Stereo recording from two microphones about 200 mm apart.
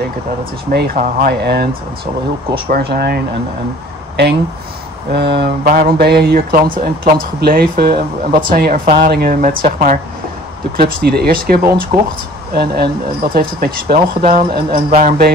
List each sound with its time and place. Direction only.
0.7 s speech: 45° right (ahead or behind)
5.1 s speech: 55° right (ahead or behind)
7.9 s speech: 25° right (ahead or behind)
8.5 s speech: 45° right (ahead or behind)
14.8 s speech: 30° right (ahead or behind)